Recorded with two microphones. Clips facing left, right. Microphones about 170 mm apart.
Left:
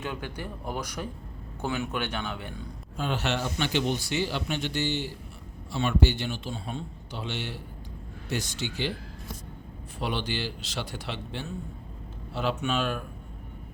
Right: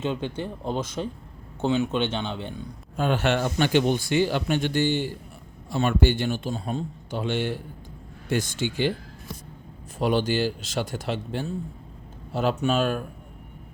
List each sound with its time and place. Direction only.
0.0 s speech: 25° right (ahead or behind)
3.0 s speech: 55° right (ahead or behind)
10.0 s speech: 45° right (ahead or behind)